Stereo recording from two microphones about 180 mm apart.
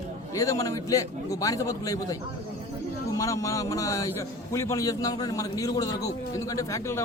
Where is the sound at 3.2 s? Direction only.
15° left (ahead or behind).